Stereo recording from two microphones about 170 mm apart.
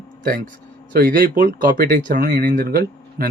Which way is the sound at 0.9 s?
60° right (ahead or behind).